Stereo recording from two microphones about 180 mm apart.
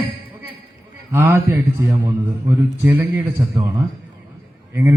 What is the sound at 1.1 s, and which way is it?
A man's voice, 15° right (ahead or behind).